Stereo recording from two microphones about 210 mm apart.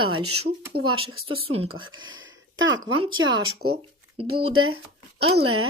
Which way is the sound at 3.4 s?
90° right.